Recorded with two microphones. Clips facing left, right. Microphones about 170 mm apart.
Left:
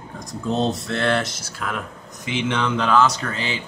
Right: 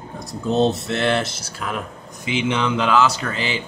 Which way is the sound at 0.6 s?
25° right (ahead or behind).